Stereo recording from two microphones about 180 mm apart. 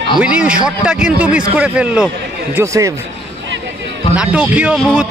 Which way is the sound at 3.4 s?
85° right.